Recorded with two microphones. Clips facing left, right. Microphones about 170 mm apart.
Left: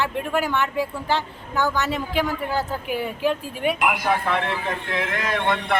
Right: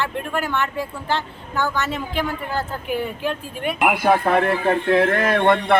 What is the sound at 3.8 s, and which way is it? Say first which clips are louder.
A man's voice: right 10 dB; 55° right (ahead or behind).